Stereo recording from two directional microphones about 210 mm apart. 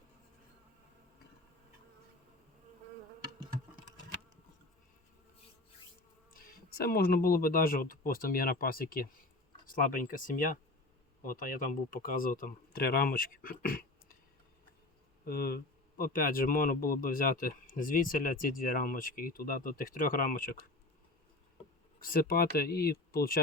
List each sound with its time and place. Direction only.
6.3 s speech: 45° left (ahead or behind)
15.3 s speech: 45° left (ahead or behind)
22.0 s speech: 45° left (ahead or behind)